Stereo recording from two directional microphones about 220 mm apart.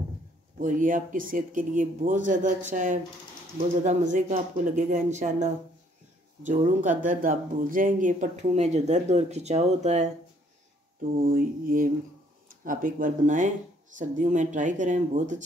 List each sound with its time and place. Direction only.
0.6 s speech: 35° right (ahead or behind)
11.0 s speech: 40° right (ahead or behind)